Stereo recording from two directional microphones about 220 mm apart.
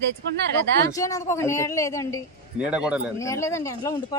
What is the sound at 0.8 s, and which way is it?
A woman's voice, 15° left (ahead or behind).